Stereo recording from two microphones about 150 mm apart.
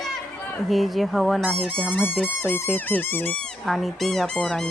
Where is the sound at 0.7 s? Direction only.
Centre (ahead or behind).